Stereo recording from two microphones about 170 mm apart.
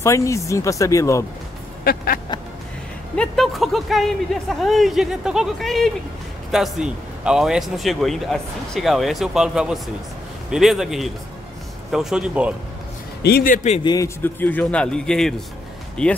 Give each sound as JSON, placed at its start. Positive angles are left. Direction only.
{"t": 0.0, "sound": "speech", "side_deg": 15}
{"t": 3.2, "sound": "speech", "side_deg": 0}
{"t": 13.2, "sound": "a man's voice", "side_deg": 65}
{"t": 13.8, "sound": "speech", "side_deg": 20}